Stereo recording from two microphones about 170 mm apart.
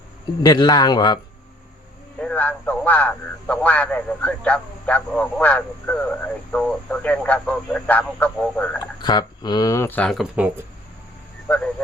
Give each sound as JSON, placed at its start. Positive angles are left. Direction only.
{"t": 0.4, "sound": "a man's voice", "side_deg": 25}
{"t": 2.2, "sound": "a man's voice", "side_deg": 10}
{"t": 9.0, "sound": "a man's voice", "side_deg": 25}
{"t": 11.4, "sound": "speech", "side_deg": 10}